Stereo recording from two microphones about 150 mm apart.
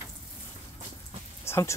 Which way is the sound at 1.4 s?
15° left (ahead or behind).